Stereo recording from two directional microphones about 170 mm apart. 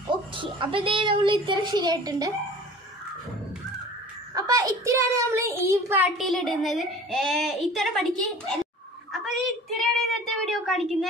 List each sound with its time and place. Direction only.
0.1 s a child's voice: 30° right (ahead or behind)
4.3 s a child's voice: 20° right (ahead or behind); by 8.5 s centre (ahead or behind)
9.1 s a sound: centre (ahead or behind)
10.4 s a child's voice: centre (ahead or behind)